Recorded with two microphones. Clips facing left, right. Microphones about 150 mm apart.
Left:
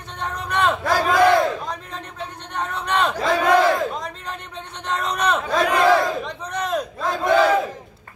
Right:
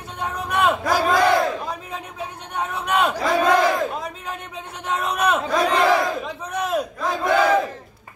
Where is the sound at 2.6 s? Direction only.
10° right (ahead or behind).